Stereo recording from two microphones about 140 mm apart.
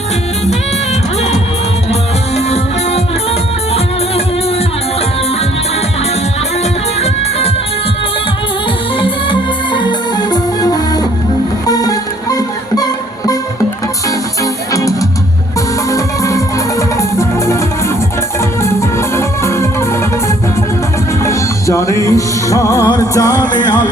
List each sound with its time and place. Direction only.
7.0 s music: 50° left (ahead or behind)
9.0 s music: 35° left (ahead or behind)
14.7 s music: 25° left (ahead or behind)
18.6 s music: 20° left (ahead or behind)
21.2 s music: 20° left (ahead or behind)